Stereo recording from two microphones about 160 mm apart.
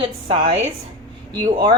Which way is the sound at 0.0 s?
35° right (ahead or behind).